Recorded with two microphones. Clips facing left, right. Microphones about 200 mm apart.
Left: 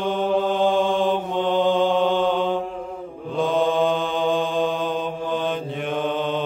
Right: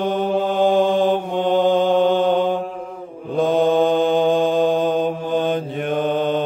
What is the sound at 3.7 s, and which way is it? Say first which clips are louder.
Mantra: right 5 dB; 40° right (ahead or behind).